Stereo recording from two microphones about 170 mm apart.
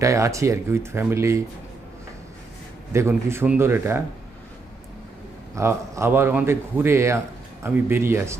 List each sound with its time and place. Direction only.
0.0 s speech: 20° right (ahead or behind)
2.9 s speech: 15° right (ahead or behind)
5.5 s speech: 15° right (ahead or behind)